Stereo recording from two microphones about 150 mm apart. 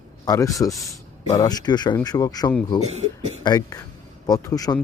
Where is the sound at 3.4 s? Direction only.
25° left (ahead or behind).